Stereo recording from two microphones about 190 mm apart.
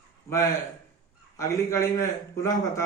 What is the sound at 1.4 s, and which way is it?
A man's voice, 15° left (ahead or behind).